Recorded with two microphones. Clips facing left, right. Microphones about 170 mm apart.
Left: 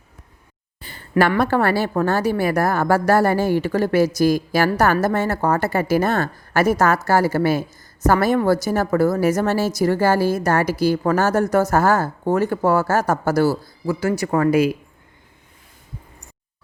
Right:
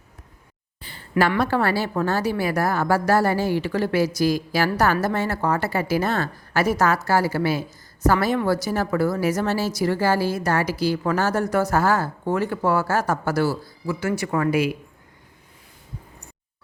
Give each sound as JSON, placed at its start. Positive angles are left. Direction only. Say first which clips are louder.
{"t": 0.8, "sound": "a woman's voice", "louder": "left 3 dB", "side_deg": 50}